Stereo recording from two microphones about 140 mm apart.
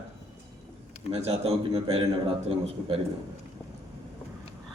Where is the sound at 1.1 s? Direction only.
45° right (ahead or behind).